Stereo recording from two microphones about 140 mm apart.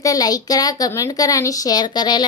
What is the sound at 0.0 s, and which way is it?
A woman's voice, 25° left (ahead or behind).